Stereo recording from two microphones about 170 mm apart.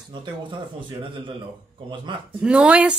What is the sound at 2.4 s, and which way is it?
Speech, 5° right (ahead or behind).